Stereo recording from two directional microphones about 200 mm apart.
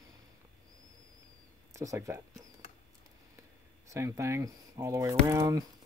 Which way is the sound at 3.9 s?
15° right (ahead or behind).